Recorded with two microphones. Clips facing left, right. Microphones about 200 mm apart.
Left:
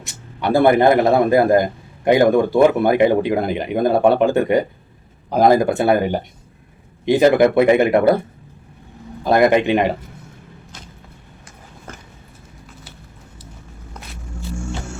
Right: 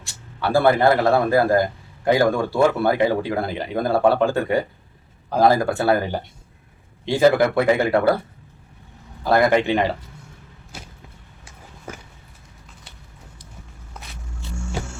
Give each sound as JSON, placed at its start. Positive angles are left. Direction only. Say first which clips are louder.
{"t": 0.0, "sound": "a man's voice", "louder": "left 3 dB", "side_deg": 20}
{"t": 9.2, "sound": "a man's voice", "louder": "left 3 dB", "side_deg": 20}
{"t": 11.9, "sound": "a sound", "louder": "right 2 dB", "side_deg": -10}